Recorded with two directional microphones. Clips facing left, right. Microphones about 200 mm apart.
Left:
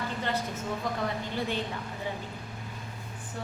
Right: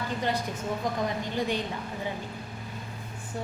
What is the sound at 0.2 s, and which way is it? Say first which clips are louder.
A woman's voice: right 2 dB; 15° right (ahead or behind).